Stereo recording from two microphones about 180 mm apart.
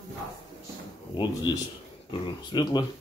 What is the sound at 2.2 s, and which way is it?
Speech, 25° left (ahead or behind).